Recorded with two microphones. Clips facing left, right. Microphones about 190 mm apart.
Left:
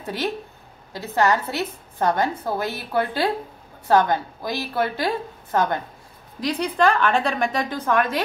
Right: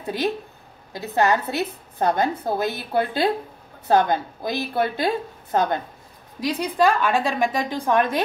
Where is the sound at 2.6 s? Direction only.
20° right (ahead or behind).